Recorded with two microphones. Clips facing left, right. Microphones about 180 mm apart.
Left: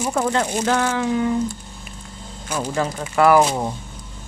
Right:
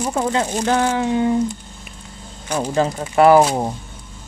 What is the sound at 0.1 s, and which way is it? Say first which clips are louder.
Speech: even; 10° right (ahead or behind).